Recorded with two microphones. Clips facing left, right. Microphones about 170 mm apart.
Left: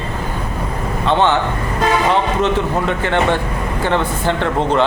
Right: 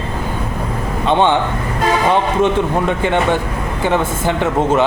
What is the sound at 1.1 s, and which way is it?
Speech, 15° right (ahead or behind).